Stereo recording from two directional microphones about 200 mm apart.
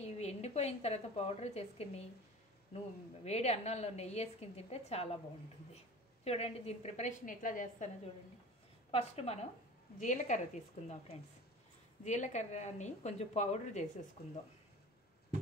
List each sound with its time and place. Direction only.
0.0 s a woman's voice: 30° left (ahead or behind)
3.3 s a woman's voice: 35° left (ahead or behind)
6.2 s a woman's voice: 30° left (ahead or behind)
8.9 s a woman's voice: 30° left (ahead or behind)
14.2 s speech: 50° left (ahead or behind)